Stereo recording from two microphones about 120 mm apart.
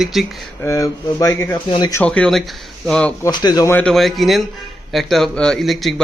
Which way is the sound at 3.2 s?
35° left (ahead or behind).